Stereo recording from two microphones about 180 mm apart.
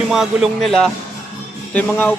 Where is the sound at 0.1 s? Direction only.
Centre (ahead or behind).